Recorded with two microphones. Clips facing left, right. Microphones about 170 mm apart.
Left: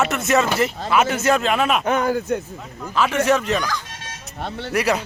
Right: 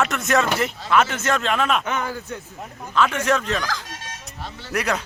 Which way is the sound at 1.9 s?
40° left (ahead or behind).